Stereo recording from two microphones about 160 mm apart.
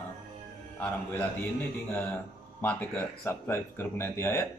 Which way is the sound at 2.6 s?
10° left (ahead or behind).